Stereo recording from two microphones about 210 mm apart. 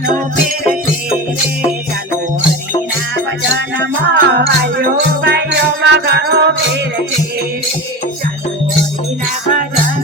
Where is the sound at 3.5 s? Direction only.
55° right (ahead or behind).